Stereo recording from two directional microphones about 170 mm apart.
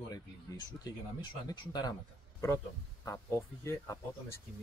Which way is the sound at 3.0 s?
15° left (ahead or behind).